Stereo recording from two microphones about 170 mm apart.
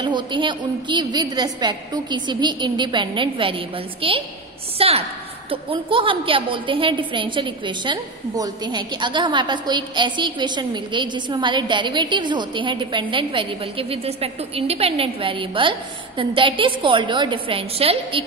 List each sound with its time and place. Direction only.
0.0 s a woman's voice: 25° right (ahead or behind)